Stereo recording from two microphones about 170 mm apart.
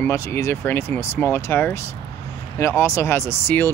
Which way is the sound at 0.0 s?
15° left (ahead or behind).